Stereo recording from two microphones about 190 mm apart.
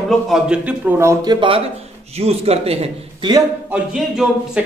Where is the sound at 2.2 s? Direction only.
30° right (ahead or behind).